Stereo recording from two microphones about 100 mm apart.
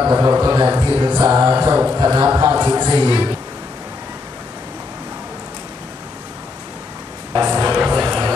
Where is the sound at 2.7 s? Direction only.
50° right (ahead or behind).